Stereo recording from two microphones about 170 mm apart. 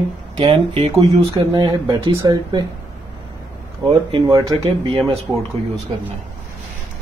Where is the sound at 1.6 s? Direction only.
25° right (ahead or behind).